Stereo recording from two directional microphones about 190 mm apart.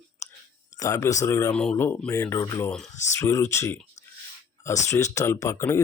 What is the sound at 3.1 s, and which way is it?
Speech, 15° left (ahead or behind).